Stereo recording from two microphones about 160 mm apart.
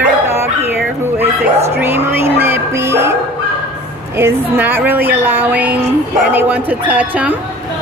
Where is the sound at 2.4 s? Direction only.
15° right (ahead or behind).